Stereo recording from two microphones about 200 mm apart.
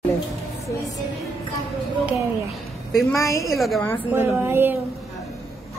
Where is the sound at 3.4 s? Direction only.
Centre (ahead or behind).